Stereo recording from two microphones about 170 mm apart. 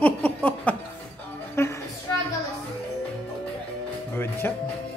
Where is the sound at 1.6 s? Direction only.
15° left (ahead or behind).